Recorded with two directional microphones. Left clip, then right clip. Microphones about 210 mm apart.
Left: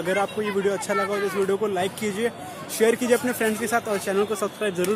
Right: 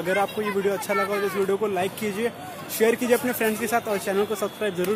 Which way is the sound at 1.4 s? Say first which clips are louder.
Left 1 dB; 5° left (ahead or behind).